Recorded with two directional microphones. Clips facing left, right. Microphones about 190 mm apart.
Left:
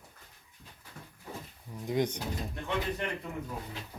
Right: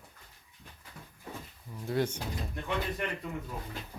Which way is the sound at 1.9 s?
15° left (ahead or behind).